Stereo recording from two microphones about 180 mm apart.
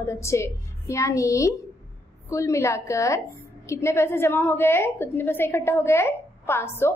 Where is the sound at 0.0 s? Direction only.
15° left (ahead or behind).